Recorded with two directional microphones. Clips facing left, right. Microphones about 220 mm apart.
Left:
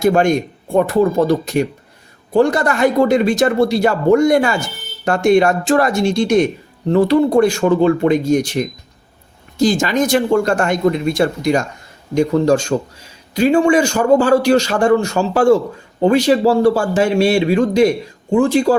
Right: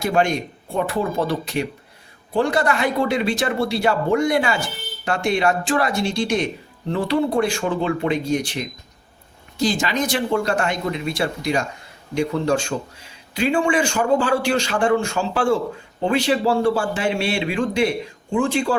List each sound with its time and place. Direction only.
0.0 s speech: 45° left (ahead or behind)